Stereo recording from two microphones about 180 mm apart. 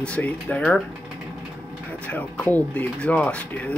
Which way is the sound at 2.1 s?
10° left (ahead or behind).